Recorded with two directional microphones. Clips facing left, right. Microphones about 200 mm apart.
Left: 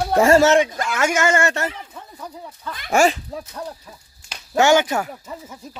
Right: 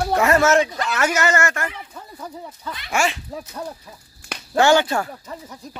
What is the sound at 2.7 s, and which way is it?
Speech, 45° left (ahead or behind).